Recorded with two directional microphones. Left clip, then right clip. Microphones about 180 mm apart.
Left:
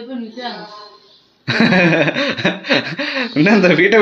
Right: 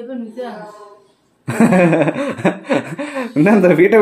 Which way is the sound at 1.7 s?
15° right (ahead or behind).